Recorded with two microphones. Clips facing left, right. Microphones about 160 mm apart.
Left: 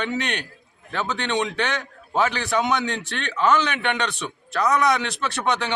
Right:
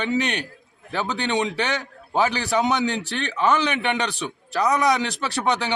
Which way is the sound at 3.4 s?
10° right (ahead or behind).